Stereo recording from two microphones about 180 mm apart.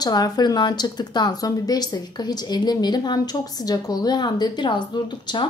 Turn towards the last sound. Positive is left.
turn(degrees=25)  # may be behind; listen again after turning